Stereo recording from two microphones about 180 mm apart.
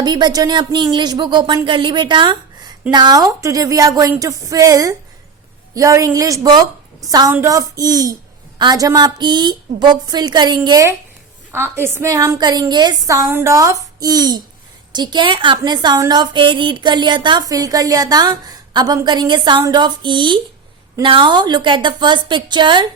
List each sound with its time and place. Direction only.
0.0 s a woman's voice: 25° right (ahead or behind)